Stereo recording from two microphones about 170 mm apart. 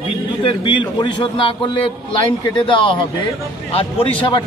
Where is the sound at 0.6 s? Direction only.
30° left (ahead or behind).